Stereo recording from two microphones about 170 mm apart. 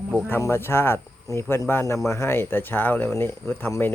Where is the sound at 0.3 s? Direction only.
15° left (ahead or behind).